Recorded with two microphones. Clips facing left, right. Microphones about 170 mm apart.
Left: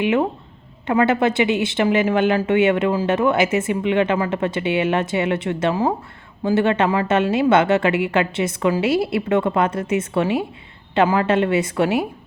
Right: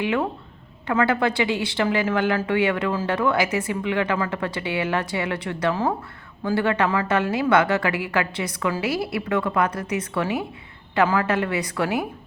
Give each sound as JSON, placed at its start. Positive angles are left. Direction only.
{"t": 0.0, "sound": "a woman's voice", "side_deg": 20}